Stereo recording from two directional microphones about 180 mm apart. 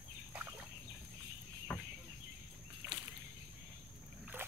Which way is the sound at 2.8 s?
20° right (ahead or behind).